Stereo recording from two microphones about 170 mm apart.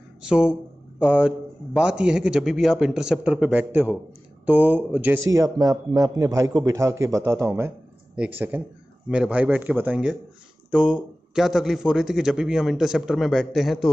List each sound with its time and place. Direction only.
0.2 s a man's voice: 5° right (ahead or behind)